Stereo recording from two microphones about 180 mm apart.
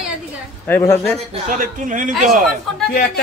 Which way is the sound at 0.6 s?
10° left (ahead or behind).